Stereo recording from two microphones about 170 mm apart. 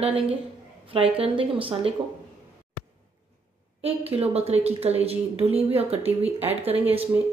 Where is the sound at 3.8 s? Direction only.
35° right (ahead or behind).